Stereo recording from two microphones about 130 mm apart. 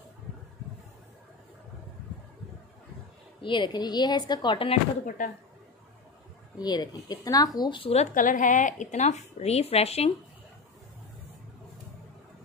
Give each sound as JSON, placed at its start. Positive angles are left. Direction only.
{"t": 3.4, "sound": "speech", "side_deg": 35}
{"t": 5.0, "sound": "speech", "side_deg": 90}
{"t": 6.6, "sound": "speech", "side_deg": 30}
{"t": 7.9, "sound": "a woman's voice", "side_deg": 75}